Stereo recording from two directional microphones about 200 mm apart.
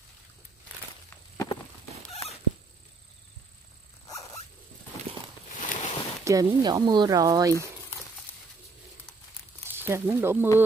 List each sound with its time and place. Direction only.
1.1 s walk: 15° left (ahead or behind)
5.6 s a sound: 40° left (ahead or behind)
6.2 s speech: 20° right (ahead or behind)
9.7 s speech: 10° right (ahead or behind)